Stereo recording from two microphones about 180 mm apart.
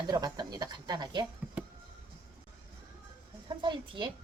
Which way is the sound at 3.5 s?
25° right (ahead or behind).